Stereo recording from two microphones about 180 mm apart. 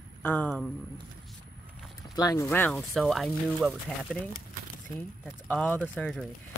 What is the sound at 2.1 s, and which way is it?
Speech, 20° left (ahead or behind).